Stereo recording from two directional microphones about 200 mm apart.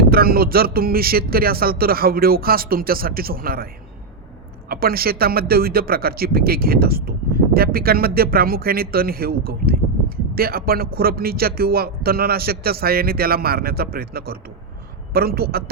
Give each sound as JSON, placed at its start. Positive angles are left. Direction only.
{"t": 0.1, "sound": "a man's voice", "side_deg": -50}
{"t": 4.7, "sound": "a man's voice", "side_deg": -50}